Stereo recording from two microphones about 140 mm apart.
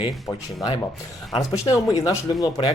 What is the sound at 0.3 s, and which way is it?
Speech, 20° left (ahead or behind).